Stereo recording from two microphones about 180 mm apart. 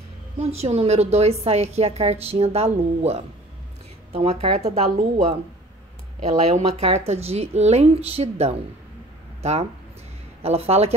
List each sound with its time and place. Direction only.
0.4 s a woman's voice: 35° right (ahead or behind)